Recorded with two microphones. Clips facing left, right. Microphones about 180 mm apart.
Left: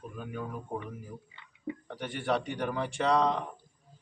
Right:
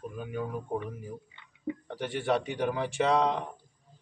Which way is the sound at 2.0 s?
Centre (ahead or behind).